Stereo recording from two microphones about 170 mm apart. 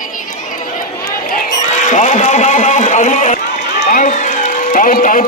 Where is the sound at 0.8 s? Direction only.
60° left (ahead or behind).